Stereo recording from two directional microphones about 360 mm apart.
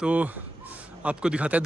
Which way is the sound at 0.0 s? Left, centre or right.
Centre.